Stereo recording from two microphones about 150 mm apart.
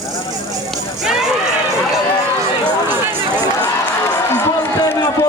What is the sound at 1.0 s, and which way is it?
Crowd, 5° right (ahead or behind).